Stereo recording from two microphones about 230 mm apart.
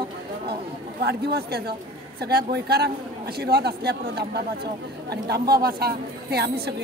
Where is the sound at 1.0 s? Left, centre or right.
Right.